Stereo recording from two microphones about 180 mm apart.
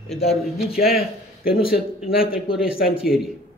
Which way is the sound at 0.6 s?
60° left (ahead or behind).